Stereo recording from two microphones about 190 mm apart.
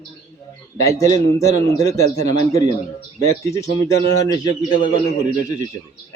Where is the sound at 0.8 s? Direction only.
15° left (ahead or behind).